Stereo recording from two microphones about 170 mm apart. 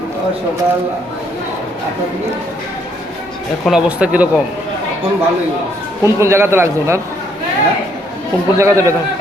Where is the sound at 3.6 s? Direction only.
5° right (ahead or behind).